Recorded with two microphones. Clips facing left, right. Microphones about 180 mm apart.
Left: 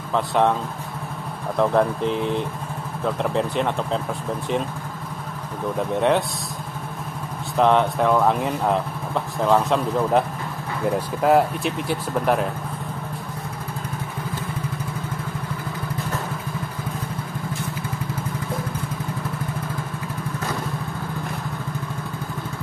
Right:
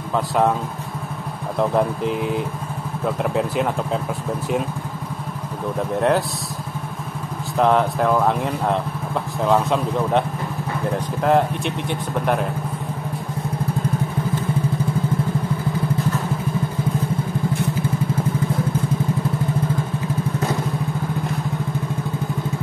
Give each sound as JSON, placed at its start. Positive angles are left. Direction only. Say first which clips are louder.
{"t": 0.1, "sound": "speech", "louder": "right 1 dB", "side_deg": -5}
{"t": 1.6, "sound": "speech", "louder": "even", "side_deg": -5}
{"t": 5.8, "sound": "speech", "louder": "right 1 dB", "side_deg": 0}
{"t": 7.5, "sound": "speech", "louder": "even", "side_deg": 0}
{"t": 11.2, "sound": "speech", "louder": "even", "side_deg": 5}